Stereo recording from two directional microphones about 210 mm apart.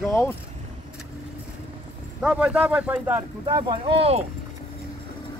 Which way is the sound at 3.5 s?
20° right (ahead or behind).